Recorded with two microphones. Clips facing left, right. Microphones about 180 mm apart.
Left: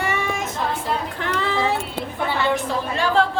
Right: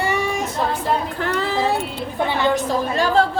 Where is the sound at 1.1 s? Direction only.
40° right (ahead or behind).